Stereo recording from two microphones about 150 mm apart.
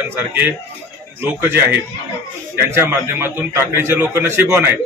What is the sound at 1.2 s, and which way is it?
A man's voice, 15° right (ahead or behind).